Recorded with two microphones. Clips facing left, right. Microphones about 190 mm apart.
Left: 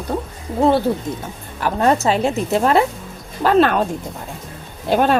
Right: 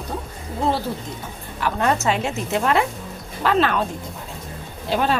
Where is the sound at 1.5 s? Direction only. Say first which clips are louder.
Left 4 dB; 40° left (ahead or behind).